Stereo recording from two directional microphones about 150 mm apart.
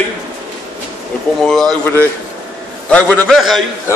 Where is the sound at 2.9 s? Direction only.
10° left (ahead or behind).